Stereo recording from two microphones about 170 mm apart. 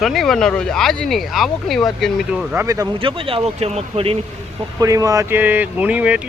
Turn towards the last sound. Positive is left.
turn(degrees=-10)  # may be behind; listen again after turning